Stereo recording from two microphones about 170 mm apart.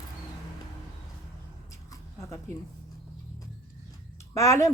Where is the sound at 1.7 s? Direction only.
20° left (ahead or behind).